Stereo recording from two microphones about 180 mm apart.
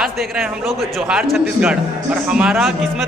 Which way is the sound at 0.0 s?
Centre (ahead or behind).